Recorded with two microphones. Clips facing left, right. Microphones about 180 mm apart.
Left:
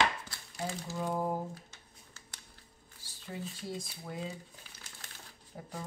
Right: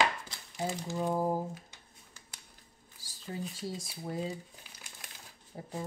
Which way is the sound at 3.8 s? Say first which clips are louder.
Right 4 dB; 35° right (ahead or behind).